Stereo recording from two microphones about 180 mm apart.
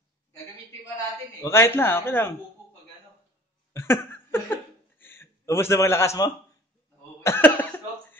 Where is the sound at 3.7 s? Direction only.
15° left (ahead or behind).